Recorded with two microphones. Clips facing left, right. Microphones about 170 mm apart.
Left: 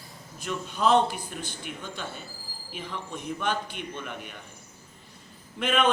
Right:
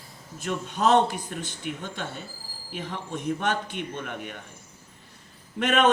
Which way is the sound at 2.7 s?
55° right (ahead or behind).